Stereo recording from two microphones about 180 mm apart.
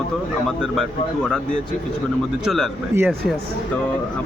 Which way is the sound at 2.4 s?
Centre (ahead or behind).